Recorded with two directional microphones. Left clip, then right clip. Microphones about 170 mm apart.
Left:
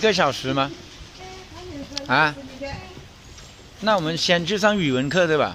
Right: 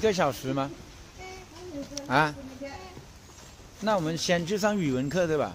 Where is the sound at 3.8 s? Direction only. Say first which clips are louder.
Left 7 dB; 15° left (ahead or behind).